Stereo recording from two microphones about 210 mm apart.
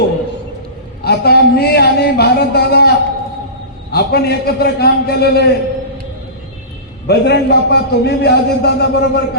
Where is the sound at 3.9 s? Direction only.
50° left (ahead or behind).